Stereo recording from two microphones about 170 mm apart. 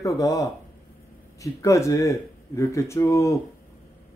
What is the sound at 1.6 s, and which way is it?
Speech, 20° left (ahead or behind).